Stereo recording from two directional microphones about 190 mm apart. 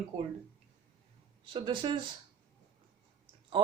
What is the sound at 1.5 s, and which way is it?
Speech, 25° right (ahead or behind).